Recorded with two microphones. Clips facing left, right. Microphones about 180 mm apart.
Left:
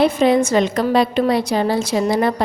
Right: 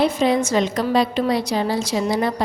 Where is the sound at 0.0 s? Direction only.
55° left (ahead or behind).